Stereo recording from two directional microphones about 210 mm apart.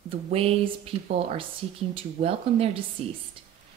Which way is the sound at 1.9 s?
25° right (ahead or behind).